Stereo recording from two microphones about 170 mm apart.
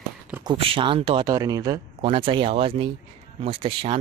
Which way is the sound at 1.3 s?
20° right (ahead or behind).